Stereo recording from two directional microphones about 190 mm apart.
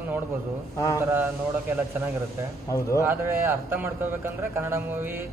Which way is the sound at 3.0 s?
15° right (ahead or behind).